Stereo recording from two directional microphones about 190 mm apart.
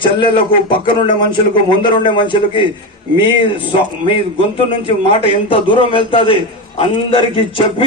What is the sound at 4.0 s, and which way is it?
A man's voice, 30° left (ahead or behind).